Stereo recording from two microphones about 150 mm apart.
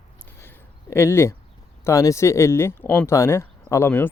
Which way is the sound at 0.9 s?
15° left (ahead or behind).